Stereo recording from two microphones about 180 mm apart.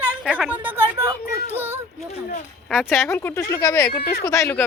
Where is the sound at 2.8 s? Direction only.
15° left (ahead or behind).